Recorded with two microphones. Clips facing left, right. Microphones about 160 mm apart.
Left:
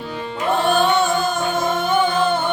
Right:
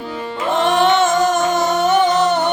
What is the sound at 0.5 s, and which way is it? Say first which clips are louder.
Music: right 2 dB; 90° right.